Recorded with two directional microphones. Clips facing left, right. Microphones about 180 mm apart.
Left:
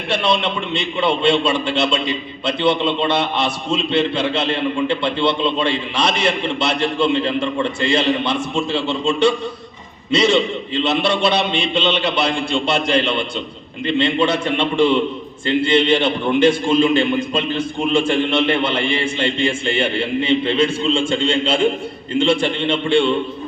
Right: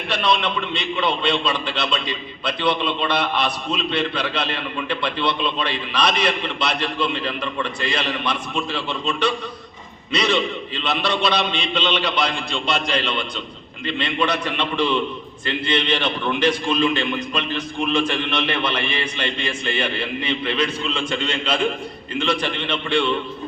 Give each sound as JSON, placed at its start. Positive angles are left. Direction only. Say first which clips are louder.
{"t": 0.1, "sound": "a man's voice", "louder": "left 3 dB", "side_deg": 25}